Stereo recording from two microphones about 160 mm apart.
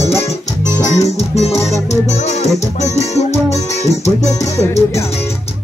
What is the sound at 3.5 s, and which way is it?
Speech, 45° left (ahead or behind).